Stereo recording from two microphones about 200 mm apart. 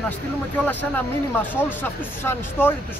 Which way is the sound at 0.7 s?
10° left (ahead or behind).